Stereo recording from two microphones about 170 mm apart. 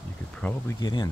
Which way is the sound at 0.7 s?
25° left (ahead or behind).